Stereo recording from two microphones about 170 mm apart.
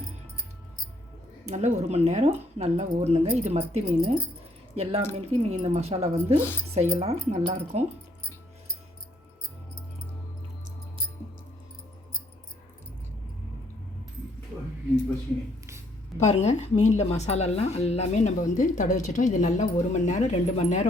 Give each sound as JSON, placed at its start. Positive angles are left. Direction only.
{"t": 1.5, "sound": "speech", "side_deg": -45}
{"t": 16.2, "sound": "a woman's voice", "side_deg": 40}